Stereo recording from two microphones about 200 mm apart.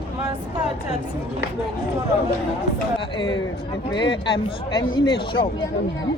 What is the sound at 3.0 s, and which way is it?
A man's voice, 25° left (ahead or behind).